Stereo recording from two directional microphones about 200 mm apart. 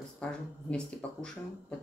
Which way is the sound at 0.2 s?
5° left (ahead or behind).